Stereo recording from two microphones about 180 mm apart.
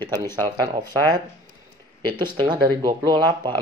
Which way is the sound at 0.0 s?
20° right (ahead or behind).